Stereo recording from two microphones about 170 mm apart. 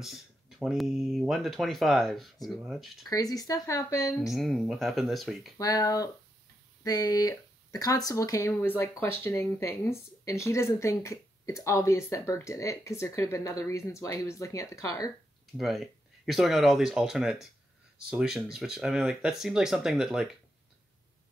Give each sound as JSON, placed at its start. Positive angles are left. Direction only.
{"t": 0.0, "sound": "a sound", "side_deg": 0}
{"t": 0.7, "sound": "speech", "side_deg": 0}
{"t": 3.1, "sound": "speech", "side_deg": 20}
{"t": 4.3, "sound": "speech", "side_deg": 0}
{"t": 5.6, "sound": "speech", "side_deg": 20}
{"t": 15.5, "sound": "speech", "side_deg": 0}